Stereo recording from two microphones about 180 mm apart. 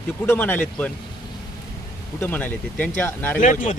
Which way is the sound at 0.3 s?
10° left (ahead or behind).